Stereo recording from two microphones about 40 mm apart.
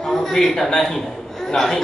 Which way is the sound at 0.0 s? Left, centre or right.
Centre.